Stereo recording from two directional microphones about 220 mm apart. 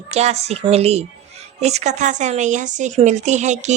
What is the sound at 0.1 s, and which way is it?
A woman's voice, 30° right (ahead or behind).